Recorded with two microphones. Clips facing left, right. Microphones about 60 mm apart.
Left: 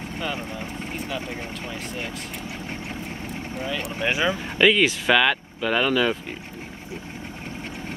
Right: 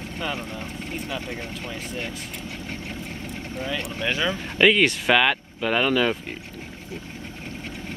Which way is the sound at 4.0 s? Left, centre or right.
Centre.